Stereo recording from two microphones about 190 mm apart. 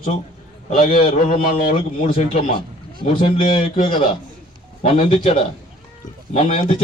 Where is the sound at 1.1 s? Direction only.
45° left (ahead or behind).